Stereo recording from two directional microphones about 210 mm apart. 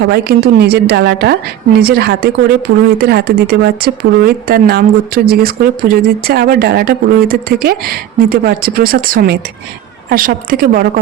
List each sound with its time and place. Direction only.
0.0 s speech: 50° right (ahead or behind)